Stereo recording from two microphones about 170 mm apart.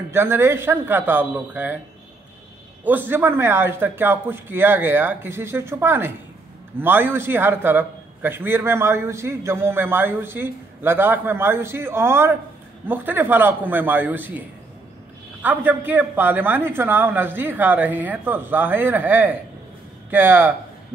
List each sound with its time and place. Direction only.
0.1 s a man's voice: 15° right (ahead or behind)
2.8 s a man's voice: 10° right (ahead or behind)
15.4 s a man's voice: 10° right (ahead or behind)